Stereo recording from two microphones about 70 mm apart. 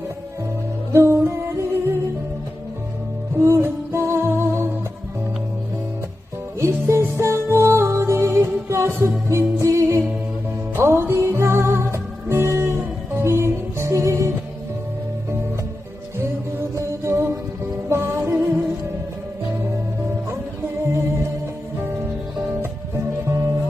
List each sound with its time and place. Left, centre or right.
0.9 s humming: right
3.3 s music: right
6.6 s music: right
16.2 s music: right
22.6 s music: right